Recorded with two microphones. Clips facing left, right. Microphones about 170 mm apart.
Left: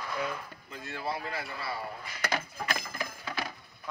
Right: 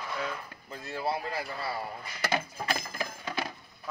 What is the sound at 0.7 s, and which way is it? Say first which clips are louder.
Speech: right 3 dB; 35° right (ahead or behind).